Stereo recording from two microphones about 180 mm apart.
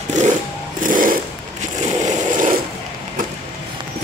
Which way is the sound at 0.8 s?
50° right (ahead or behind).